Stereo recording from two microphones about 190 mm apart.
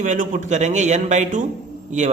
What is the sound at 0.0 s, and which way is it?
A man's voice, 40° right (ahead or behind).